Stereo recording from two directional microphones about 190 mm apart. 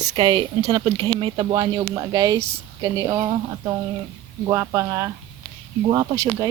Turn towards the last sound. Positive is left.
turn(degrees=-20)  # may be behind; listen again after turning